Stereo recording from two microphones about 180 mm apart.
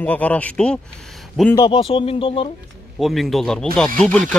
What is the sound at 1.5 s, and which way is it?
Speech, 25° left (ahead or behind).